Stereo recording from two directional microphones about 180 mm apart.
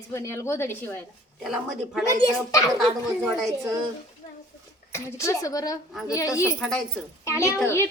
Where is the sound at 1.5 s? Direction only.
Centre (ahead or behind).